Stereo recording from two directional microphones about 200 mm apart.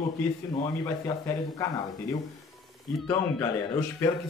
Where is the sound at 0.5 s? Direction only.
15° left (ahead or behind).